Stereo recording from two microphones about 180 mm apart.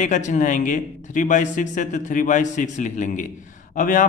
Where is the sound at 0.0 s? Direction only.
45° left (ahead or behind).